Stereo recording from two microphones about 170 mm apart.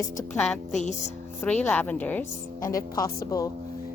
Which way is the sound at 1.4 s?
10° left (ahead or behind).